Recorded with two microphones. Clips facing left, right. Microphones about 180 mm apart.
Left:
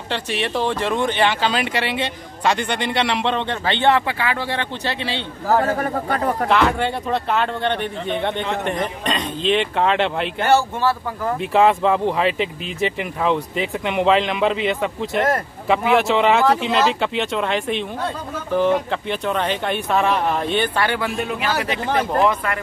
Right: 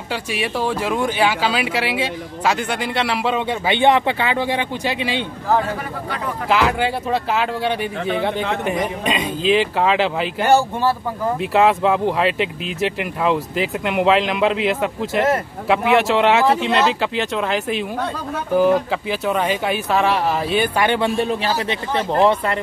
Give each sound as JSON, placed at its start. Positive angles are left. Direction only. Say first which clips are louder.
{"t": 0.1, "sound": "speech", "louder": "even", "side_deg": -10}
{"t": 5.8, "sound": "speech", "louder": "left 5 dB", "side_deg": 45}
{"t": 6.5, "sound": "speech", "louder": "right 3 dB", "side_deg": 0}
{"t": 11.5, "sound": "speech", "louder": "even", "side_deg": 0}
{"t": 20.9, "sound": "speech", "louder": "right 5 dB", "side_deg": -30}